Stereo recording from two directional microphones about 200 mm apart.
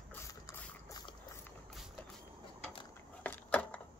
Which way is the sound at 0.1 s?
15° left (ahead or behind).